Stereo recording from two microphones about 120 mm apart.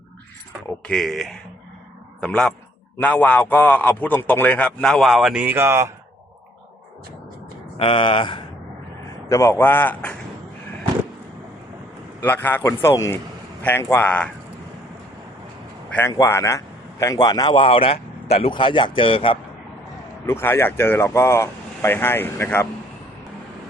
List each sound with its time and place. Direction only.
0.9 s a man's voice: centre (ahead or behind); by 5.9 s 20° right (ahead or behind)
7.8 s a man's voice: 45° left (ahead or behind)
9.3 s a man's voice: 25° left (ahead or behind)
12.2 s a man's voice: 15° left (ahead or behind)
16.0 s a man's voice: 25° left (ahead or behind); by 19.4 s 50° left (ahead or behind)
20.2 s speech: 20° left (ahead or behind)